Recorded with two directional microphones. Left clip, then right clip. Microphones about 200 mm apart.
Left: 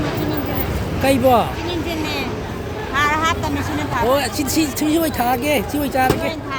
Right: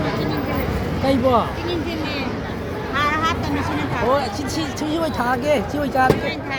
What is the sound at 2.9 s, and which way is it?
Vehicle, 45° left (ahead or behind).